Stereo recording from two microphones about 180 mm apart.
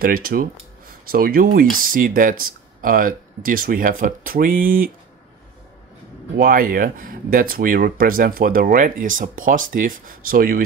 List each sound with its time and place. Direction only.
0.0 s speech: 55° right (ahead or behind)
6.3 s speech: 55° right (ahead or behind)